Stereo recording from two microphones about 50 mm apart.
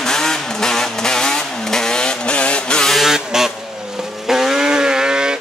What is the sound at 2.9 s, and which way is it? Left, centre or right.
Vehicle, centre.